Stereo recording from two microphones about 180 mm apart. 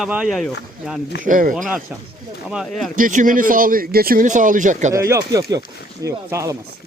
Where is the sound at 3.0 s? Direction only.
45° right (ahead or behind).